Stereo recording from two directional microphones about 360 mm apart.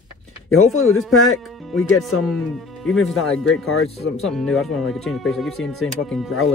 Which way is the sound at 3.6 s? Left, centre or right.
Left.